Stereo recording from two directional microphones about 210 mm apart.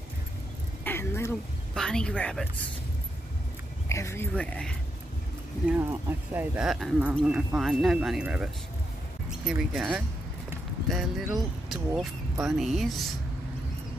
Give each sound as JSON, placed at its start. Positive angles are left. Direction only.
{"t": 0.8, "sound": "a sound", "side_deg": 10}
{"t": 1.7, "sound": "speech", "side_deg": 5}
{"t": 3.9, "sound": "speech", "side_deg": 15}
{"t": 5.7, "sound": "speech", "side_deg": -10}
{"t": 9.5, "sound": "speech", "side_deg": 0}